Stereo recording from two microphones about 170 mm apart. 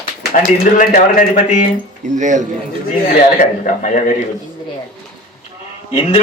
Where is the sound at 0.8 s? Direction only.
50° left (ahead or behind).